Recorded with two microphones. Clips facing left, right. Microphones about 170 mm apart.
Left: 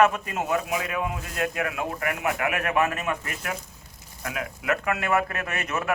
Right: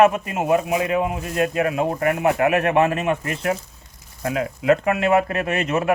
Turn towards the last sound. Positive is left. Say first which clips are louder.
# right 8 dB
turn(degrees=-25)  # may be behind; listen again after turning